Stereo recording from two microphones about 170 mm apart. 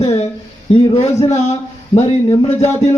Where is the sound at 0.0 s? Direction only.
35° left (ahead or behind).